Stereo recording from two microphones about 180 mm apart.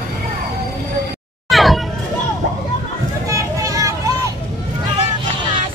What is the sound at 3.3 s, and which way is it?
Vehicle, 20° right (ahead or behind).